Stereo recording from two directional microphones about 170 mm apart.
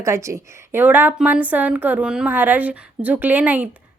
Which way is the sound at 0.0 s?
15° right (ahead or behind).